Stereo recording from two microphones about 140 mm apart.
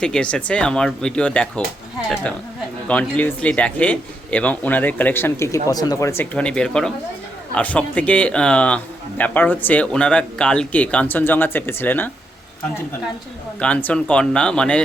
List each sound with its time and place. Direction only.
0.0 s a man's voice: 5° left (ahead or behind)
2.8 s a man's voice: 10° left (ahead or behind)
6.3 s a man's voice: 5° left (ahead or behind)
13.6 s a man's voice: 10° left (ahead or behind)